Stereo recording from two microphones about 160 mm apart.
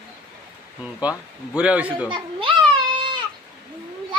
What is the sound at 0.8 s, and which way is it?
A man's voice, 10° right (ahead or behind).